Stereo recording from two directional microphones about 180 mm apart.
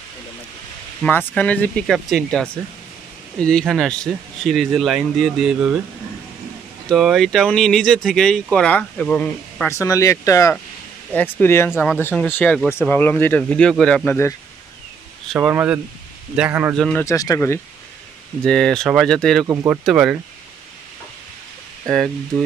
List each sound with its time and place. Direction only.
1.0 s speech: 10° left (ahead or behind)
6.9 s speech: centre (ahead or behind)
15.3 s speech: 10° right (ahead or behind)
16.7 s speech: centre (ahead or behind)
17.0 s speech: 20° left (ahead or behind)
18.4 s speech: 5° left (ahead or behind)
19.4 s speech: 20° right (ahead or behind)
19.7 s speech: 5° right (ahead or behind)
21.8 s speech: centre (ahead or behind)